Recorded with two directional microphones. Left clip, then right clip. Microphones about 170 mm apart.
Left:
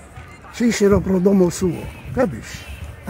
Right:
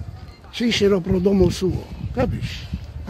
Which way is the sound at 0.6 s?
30° right (ahead or behind).